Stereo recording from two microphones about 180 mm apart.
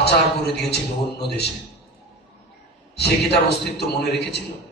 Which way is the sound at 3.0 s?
65° left (ahead or behind).